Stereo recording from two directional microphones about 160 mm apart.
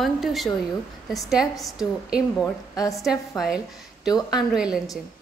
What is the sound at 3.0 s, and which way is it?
A woman's voice, 5° right (ahead or behind).